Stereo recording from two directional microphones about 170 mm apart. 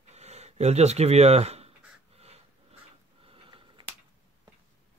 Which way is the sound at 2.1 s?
35° right (ahead or behind).